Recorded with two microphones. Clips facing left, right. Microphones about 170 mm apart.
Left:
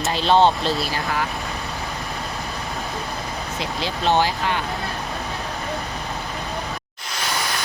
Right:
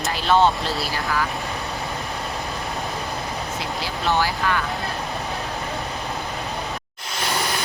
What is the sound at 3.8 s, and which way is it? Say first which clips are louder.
Speech: left 3 dB; 20° left (ahead or behind).